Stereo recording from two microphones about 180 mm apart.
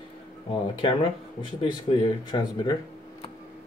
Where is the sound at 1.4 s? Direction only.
25° left (ahead or behind).